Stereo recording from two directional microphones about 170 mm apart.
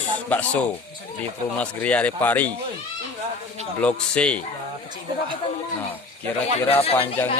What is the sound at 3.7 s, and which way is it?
Speech, 5° left (ahead or behind).